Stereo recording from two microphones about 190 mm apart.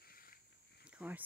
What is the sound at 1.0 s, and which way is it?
Speech, 5° right (ahead or behind).